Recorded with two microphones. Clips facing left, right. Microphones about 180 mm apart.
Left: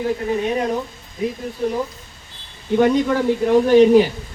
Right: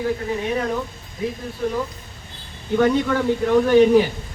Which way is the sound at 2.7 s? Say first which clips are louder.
Left 2 dB; 20° left (ahead or behind).